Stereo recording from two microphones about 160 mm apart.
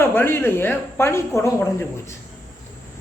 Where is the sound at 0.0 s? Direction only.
15° left (ahead or behind).